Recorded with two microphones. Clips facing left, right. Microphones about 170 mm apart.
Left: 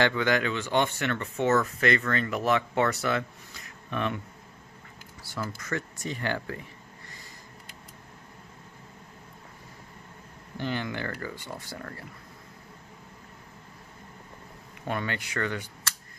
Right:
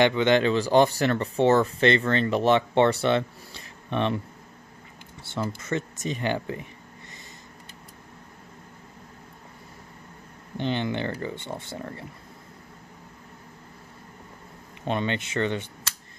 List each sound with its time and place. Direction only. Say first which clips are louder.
0.0 s speech: right 5 dB; 20° right (ahead or behind)
5.2 s speech: right 5 dB; 25° right (ahead or behind)
10.6 s speech: right 5 dB; 25° right (ahead or behind)
14.9 s speech: right 5 dB; 25° right (ahead or behind)